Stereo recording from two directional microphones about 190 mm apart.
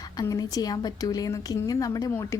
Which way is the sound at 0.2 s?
20° left (ahead or behind).